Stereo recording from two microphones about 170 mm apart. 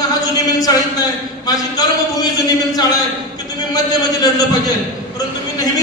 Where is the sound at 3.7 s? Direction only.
20° left (ahead or behind).